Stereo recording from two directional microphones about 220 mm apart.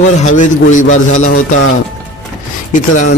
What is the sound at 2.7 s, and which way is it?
Speech, 35° left (ahead or behind).